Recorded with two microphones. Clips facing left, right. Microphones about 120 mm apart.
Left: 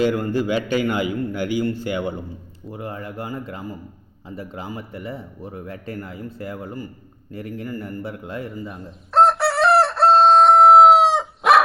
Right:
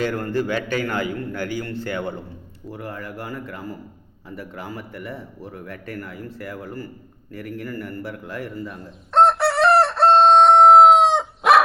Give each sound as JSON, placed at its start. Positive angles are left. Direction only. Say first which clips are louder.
{"t": 0.0, "sound": "a man's voice", "louder": "left 3 dB", "side_deg": 10}
{"t": 9.1, "sound": "crowing", "louder": "even", "side_deg": 0}